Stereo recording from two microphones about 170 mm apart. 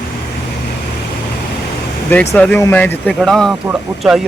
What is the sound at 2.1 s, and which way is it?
Speech, 10° left (ahead or behind).